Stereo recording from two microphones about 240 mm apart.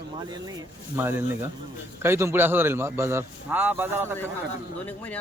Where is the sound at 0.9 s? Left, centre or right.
Centre.